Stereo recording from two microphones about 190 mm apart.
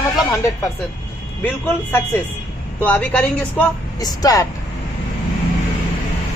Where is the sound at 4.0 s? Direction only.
20° left (ahead or behind).